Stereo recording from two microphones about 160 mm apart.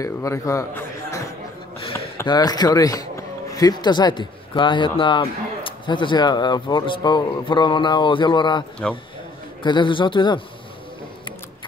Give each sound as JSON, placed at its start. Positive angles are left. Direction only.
{"t": 0.0, "sound": "speech", "side_deg": 20}
{"t": 2.2, "sound": "speech", "side_deg": 25}